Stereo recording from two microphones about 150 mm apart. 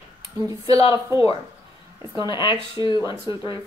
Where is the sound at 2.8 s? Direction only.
30° left (ahead or behind).